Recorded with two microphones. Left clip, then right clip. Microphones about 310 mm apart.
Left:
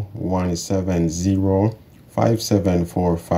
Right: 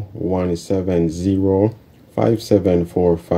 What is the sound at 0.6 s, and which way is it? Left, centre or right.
Speech, left.